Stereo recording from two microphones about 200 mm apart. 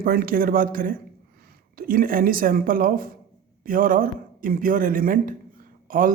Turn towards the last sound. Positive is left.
turn(degrees=-45)  # may be behind; listen again after turning